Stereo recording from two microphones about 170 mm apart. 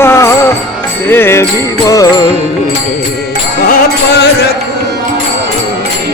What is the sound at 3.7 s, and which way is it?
Music, 75° left (ahead or behind).